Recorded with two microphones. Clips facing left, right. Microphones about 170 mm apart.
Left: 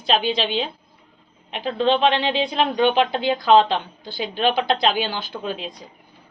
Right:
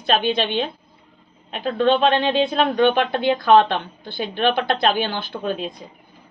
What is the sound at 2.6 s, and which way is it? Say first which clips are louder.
Speech: right 1 dB; 10° left (ahead or behind).